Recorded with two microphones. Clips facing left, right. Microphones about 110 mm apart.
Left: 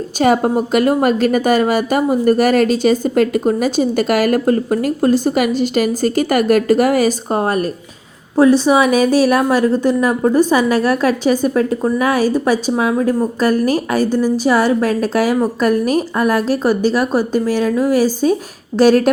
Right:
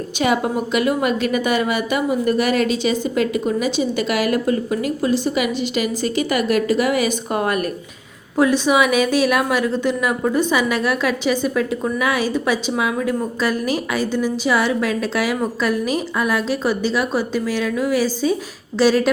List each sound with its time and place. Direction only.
0.2 s a woman's voice: 40° left (ahead or behind)